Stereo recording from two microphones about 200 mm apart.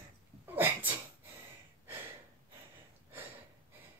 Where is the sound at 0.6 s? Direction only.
10° right (ahead or behind).